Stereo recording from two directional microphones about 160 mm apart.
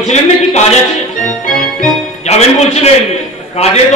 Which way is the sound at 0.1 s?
45° left (ahead or behind).